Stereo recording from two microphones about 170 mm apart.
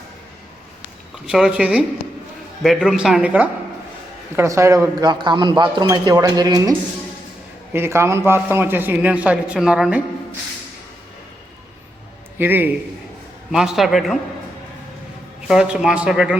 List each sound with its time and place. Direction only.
1.3 s a man's voice: 5° right (ahead or behind)
12.4 s a man's voice: 10° right (ahead or behind)
15.4 s speech: 5° right (ahead or behind)